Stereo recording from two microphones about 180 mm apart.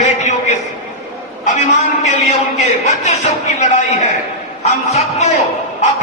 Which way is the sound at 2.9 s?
40° left (ahead or behind).